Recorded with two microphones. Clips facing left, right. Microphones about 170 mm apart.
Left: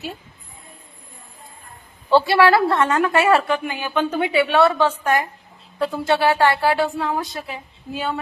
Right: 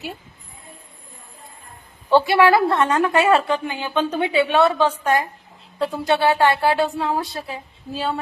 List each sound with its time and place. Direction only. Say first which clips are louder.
2.0 s a woman's voice: even; 15° right (ahead or behind)